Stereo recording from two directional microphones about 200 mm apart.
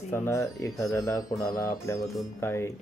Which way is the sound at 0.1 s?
15° left (ahead or behind).